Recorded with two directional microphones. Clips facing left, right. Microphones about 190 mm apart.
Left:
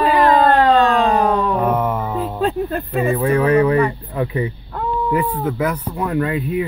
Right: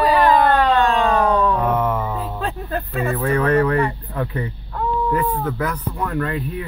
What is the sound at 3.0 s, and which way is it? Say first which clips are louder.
Speech: left 4 dB; 15° left (ahead or behind).